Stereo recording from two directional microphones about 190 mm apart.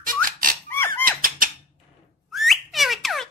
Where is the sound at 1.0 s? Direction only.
45° right (ahead or behind).